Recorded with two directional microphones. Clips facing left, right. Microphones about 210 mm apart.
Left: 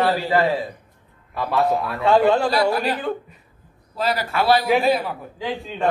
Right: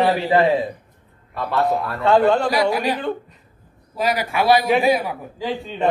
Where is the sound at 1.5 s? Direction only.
Centre (ahead or behind).